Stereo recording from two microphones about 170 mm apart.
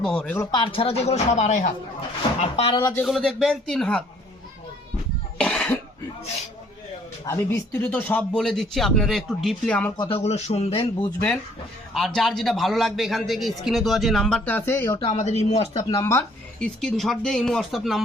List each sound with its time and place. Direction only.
0.0 s a man's voice: 5° left (ahead or behind)
0.5 s speech: 30° left (ahead or behind); by 1.7 s 45° left (ahead or behind)
2.4 s speech: 35° left (ahead or behind)
2.8 s a man's voice: 10° left (ahead or behind)
5.4 s cough: 5° left (ahead or behind)
7.3 s speech: 15° left (ahead or behind)
10.0 s speech: 35° left (ahead or behind)
11.0 s a man's voice: 10° left (ahead or behind)
14.9 s speech: 30° left (ahead or behind)
15.2 s speech: 40° left (ahead or behind)
15.8 s speech: 25° left (ahead or behind)
16.6 s a man's voice: 5° left (ahead or behind)